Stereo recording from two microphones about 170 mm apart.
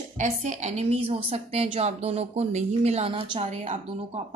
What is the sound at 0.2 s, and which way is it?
A woman's voice, 45° right (ahead or behind).